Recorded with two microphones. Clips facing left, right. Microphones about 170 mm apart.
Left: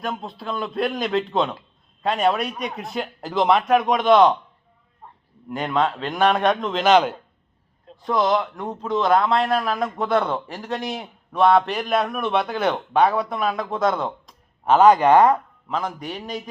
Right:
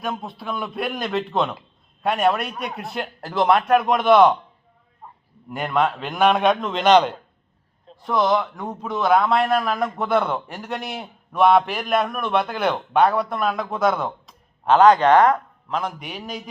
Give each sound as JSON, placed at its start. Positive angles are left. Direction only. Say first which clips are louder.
{"t": 0.0, "sound": "a man's voice", "louder": "even", "side_deg": -5}
{"t": 5.5, "sound": "a man's voice", "louder": "even", "side_deg": -5}